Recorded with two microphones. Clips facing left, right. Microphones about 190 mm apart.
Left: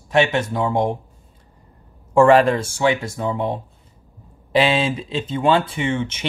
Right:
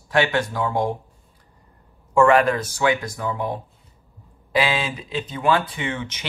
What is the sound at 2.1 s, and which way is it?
Speech, 30° left (ahead or behind).